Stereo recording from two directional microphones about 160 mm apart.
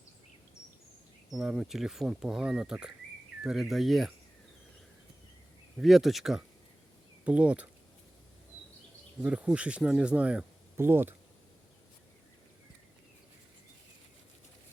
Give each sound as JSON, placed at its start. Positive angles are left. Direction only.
{"t": 1.3, "sound": "speech", "side_deg": -5}
{"t": 5.7, "sound": "speech", "side_deg": 0}
{"t": 9.2, "sound": "speech", "side_deg": -5}